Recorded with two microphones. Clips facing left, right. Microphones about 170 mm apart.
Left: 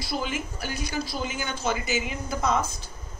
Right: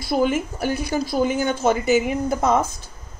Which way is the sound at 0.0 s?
50° right (ahead or behind).